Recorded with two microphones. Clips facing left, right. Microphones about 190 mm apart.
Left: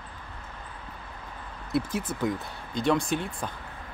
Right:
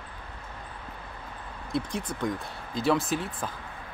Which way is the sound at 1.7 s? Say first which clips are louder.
Left 3 dB; 5° left (ahead or behind).